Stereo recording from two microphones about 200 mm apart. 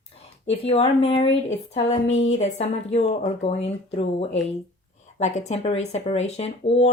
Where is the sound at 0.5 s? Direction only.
30° left (ahead or behind).